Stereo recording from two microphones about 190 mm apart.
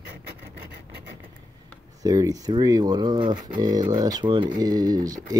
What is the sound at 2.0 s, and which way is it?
Speech, 20° right (ahead or behind).